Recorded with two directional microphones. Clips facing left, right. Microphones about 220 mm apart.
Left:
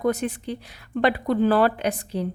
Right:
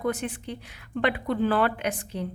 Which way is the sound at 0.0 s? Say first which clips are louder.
Left 5 dB; 40° left (ahead or behind).